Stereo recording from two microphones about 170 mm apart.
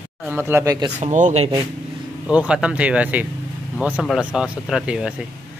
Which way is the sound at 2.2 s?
5° right (ahead or behind).